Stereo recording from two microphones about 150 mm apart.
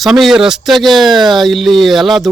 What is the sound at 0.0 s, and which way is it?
Speech, centre (ahead or behind).